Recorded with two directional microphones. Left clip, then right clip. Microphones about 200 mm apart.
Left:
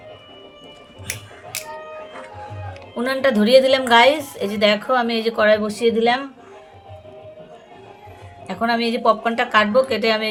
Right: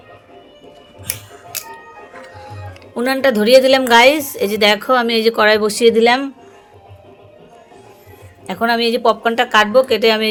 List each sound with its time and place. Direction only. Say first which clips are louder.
2.9 s a woman's voice: right 4 dB; 35° right (ahead or behind); by 6.3 s 50° right (ahead or behind)
8.4 s a woman's voice: right 5 dB; 35° right (ahead or behind)